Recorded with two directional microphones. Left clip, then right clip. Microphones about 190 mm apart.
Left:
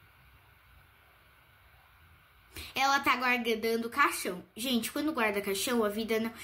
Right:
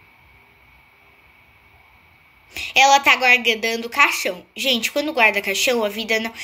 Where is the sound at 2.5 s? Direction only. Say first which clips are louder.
Right 15 dB; 25° left (ahead or behind).